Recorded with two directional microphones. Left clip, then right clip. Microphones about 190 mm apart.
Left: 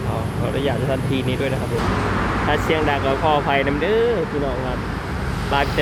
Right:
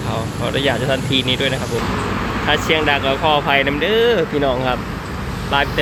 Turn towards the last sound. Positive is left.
turn(degrees=5)  # may be behind; listen again after turning